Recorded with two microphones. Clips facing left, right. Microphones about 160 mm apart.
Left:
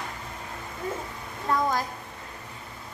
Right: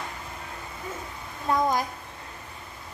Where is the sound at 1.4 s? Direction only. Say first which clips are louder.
Right 2 dB; 15° right (ahead or behind).